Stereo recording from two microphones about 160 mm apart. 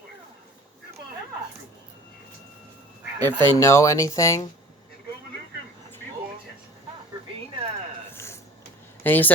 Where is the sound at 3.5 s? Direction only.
20° left (ahead or behind).